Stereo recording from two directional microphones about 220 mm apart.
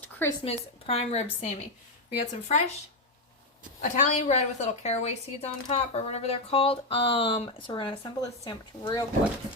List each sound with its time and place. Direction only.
0.0 s a sound: 10° left (ahead or behind)
0.4 s a woman's voice: 25° left (ahead or behind)
3.8 s a woman's voice: 35° left (ahead or behind)